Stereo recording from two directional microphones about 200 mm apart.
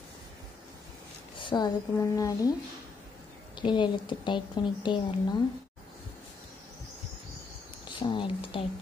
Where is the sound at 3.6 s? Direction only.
25° left (ahead or behind).